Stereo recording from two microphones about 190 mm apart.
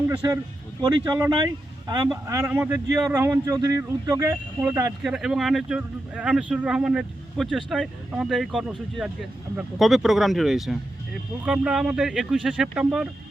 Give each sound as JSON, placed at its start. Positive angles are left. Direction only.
{"t": 0.8, "sound": "speech", "side_deg": -20}
{"t": 2.4, "sound": "speech", "side_deg": -10}
{"t": 5.0, "sound": "speech", "side_deg": -5}